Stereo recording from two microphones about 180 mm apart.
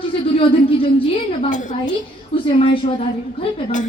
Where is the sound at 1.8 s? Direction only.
30° left (ahead or behind).